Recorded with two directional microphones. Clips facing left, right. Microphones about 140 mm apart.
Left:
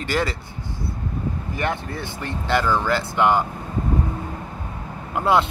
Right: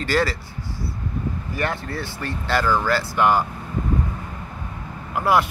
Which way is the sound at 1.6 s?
20° left (ahead or behind).